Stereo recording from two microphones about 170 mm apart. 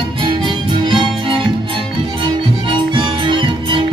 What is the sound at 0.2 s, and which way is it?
Music, 30° right (ahead or behind).